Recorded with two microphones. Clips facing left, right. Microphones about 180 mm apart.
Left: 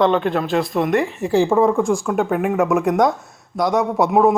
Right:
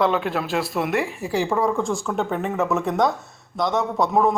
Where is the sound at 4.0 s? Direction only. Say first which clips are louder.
Left 4 dB; 20° left (ahead or behind).